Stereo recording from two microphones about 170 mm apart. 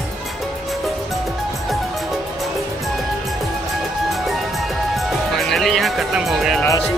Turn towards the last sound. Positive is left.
turn(degrees=0)  # may be behind; listen again after turning